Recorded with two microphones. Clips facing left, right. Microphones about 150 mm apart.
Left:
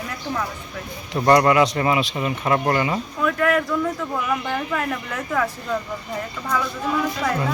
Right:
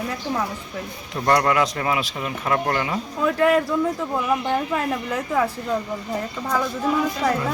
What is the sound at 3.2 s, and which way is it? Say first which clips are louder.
Speech: right 2 dB; 25° right (ahead or behind).